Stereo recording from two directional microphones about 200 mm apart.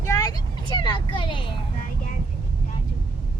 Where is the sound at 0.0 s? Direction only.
15° left (ahead or behind).